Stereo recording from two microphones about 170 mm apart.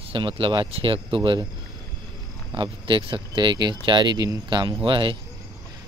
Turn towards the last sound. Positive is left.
turn(degrees=-30)  # may be behind; listen again after turning